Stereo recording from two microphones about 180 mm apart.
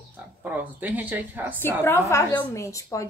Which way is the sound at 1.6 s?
10° left (ahead or behind).